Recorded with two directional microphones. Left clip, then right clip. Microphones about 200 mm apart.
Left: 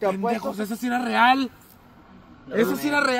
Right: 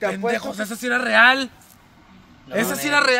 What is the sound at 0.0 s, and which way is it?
Speech, 15° right (ahead or behind).